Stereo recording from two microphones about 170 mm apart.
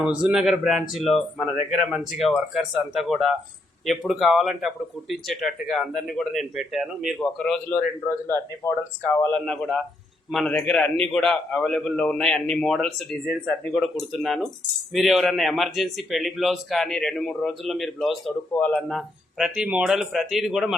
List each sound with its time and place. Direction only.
0.0 s speech: 5° right (ahead or behind)
8.0 s a man's voice: 15° left (ahead or behind)
9.5 s speech: 5° left (ahead or behind)